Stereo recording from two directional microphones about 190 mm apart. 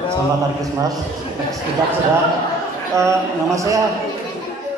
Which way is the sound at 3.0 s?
15° right (ahead or behind).